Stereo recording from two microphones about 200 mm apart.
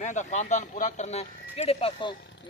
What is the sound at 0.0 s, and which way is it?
Speech, 35° left (ahead or behind).